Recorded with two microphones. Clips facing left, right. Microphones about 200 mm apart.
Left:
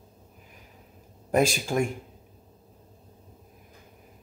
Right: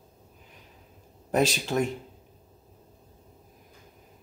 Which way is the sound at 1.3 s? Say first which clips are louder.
Left 1 dB; 10° left (ahead or behind).